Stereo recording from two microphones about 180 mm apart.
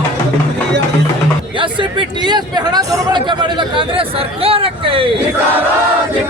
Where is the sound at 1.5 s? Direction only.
25° right (ahead or behind).